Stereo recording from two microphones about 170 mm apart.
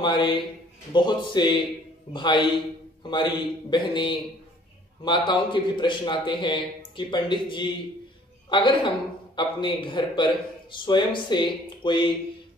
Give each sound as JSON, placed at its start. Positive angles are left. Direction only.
{"t": 0.0, "sound": "a man's voice", "side_deg": 25}